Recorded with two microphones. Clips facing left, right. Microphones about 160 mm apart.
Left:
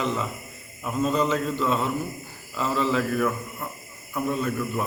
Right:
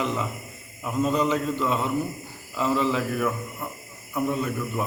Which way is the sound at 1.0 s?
15° right (ahead or behind).